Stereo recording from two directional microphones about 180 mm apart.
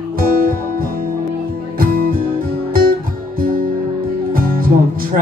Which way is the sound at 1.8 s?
55° right (ahead or behind).